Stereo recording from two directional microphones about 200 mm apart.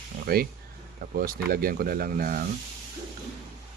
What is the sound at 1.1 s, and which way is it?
Speech, 45° right (ahead or behind).